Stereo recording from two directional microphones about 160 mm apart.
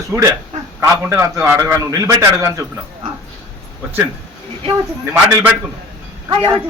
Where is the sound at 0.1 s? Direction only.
15° right (ahead or behind).